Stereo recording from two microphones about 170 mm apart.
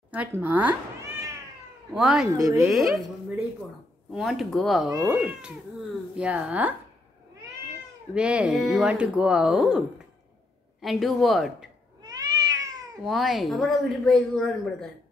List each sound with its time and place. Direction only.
0.1 s cat: 10° right (ahead or behind)
2.0 s speech: 5° right (ahead or behind)
2.2 s speech: 20° right (ahead or behind)
2.6 s speech: centre (ahead or behind)
8.1 s speech: 5° right (ahead or behind)
12.0 s cat: 20° right (ahead or behind)
13.0 s speech: centre (ahead or behind)